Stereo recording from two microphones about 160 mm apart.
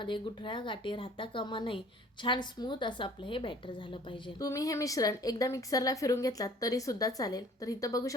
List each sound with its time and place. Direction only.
0.0 s a woman's voice: 30° left (ahead or behind)
4.1 s a woman's voice: 20° left (ahead or behind)